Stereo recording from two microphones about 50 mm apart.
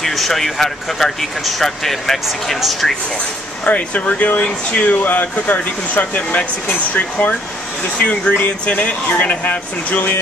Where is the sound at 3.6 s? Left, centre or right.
Left.